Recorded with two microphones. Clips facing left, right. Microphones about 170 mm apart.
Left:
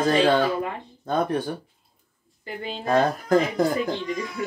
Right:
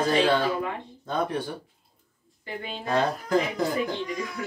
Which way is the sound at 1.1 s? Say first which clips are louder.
Left 4 dB; 50° left (ahead or behind).